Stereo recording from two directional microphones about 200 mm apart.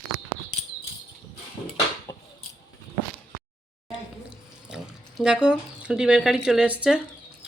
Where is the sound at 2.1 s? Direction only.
20° left (ahead or behind).